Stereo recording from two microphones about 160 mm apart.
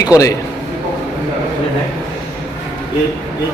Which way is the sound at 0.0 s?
20° left (ahead or behind).